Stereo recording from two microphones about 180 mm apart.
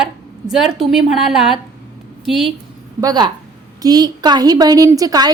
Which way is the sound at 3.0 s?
25° right (ahead or behind).